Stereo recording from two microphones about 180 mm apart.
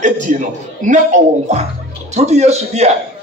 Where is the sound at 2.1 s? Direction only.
40° right (ahead or behind).